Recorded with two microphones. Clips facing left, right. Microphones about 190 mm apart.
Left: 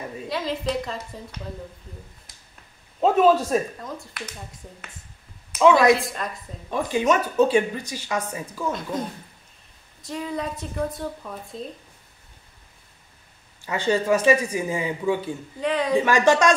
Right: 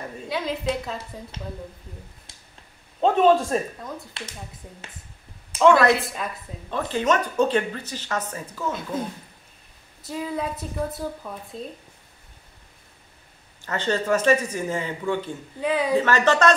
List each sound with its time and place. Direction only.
0.3 s a woman's voice: centre (ahead or behind)
2.3 s finger snapping: 30° right (ahead or behind)
3.0 s a woman's voice: 5° left (ahead or behind)
4.2 s speech: 25° right (ahead or behind)
5.6 s a woman's voice: 5° left (ahead or behind)
6.7 s speech: 10° left (ahead or behind)
10.0 s a woman's voice: 5° right (ahead or behind)
13.6 s speech: 10° left (ahead or behind)
15.6 s a woman's voice: 5° right (ahead or behind)
16.0 s speech: 10° left (ahead or behind)